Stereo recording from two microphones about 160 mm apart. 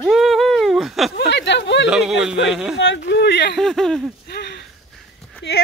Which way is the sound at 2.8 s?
90° left.